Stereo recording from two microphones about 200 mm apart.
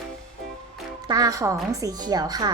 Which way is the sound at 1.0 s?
20° right (ahead or behind).